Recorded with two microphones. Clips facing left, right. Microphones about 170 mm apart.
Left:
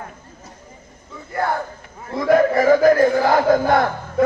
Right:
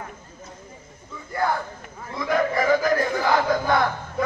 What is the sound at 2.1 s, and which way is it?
Chant, 50° left (ahead or behind).